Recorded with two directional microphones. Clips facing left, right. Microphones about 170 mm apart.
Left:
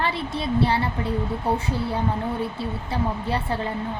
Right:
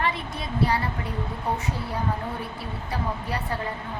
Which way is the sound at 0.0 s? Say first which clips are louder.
Left 3 dB; 30° left (ahead or behind).